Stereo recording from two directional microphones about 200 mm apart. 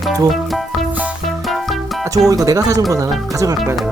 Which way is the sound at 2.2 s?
15° right (ahead or behind).